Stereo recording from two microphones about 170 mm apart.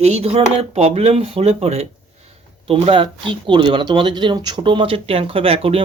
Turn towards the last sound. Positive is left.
turn(degrees=-35)  # may be behind; listen again after turning